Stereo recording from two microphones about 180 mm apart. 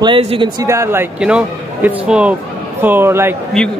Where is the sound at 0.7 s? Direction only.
15° right (ahead or behind).